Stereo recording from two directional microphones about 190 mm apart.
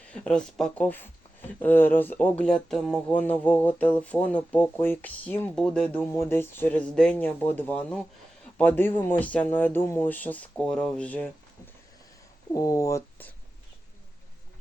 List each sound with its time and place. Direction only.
0.1 s speech: 5° left (ahead or behind)
12.5 s speech: 15° left (ahead or behind)